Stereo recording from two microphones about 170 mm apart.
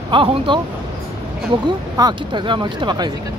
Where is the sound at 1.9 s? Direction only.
25° right (ahead or behind).